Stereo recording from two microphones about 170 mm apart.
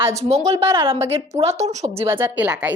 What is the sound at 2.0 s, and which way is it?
Speech, 10° right (ahead or behind).